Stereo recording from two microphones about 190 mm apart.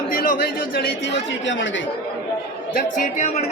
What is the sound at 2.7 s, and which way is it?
Speech, 40° left (ahead or behind).